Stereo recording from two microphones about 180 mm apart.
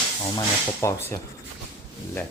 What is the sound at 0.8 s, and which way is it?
Speech, 15° left (ahead or behind).